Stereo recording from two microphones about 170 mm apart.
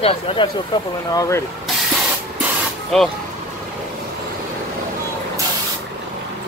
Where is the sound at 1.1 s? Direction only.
20° left (ahead or behind).